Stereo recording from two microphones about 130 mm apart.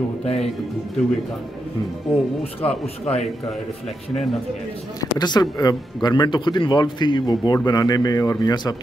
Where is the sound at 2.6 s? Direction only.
50° left (ahead or behind).